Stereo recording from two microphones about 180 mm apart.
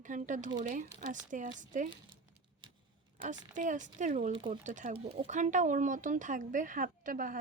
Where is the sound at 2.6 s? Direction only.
25° right (ahead or behind).